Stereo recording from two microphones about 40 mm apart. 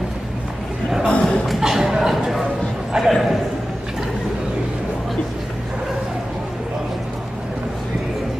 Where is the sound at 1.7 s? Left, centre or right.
Centre.